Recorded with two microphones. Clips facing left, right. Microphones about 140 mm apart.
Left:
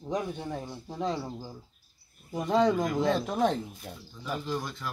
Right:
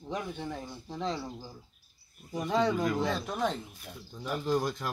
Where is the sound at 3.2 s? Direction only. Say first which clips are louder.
Left 5 dB; 25° left (ahead or behind).